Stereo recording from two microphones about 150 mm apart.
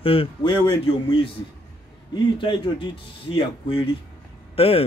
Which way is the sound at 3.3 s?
35° left (ahead or behind).